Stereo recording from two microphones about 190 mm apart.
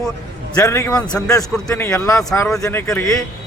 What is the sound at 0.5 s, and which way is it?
Speech, 15° left (ahead or behind).